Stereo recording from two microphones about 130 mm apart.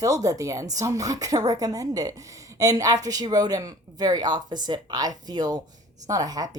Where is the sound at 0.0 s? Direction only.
25° right (ahead or behind).